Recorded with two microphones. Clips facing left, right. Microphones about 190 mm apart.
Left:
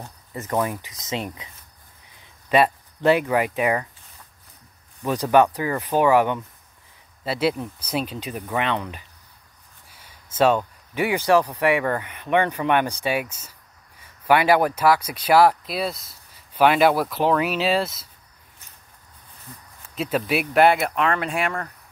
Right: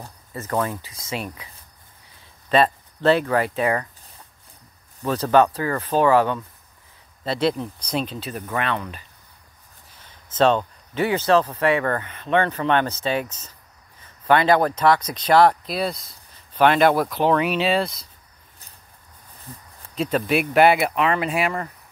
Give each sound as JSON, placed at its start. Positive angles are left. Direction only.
{"t": 0.3, "sound": "speech", "side_deg": 15}
{"t": 2.5, "sound": "speech", "side_deg": 10}
{"t": 5.0, "sound": "speech", "side_deg": 15}
{"t": 20.0, "sound": "speech", "side_deg": 5}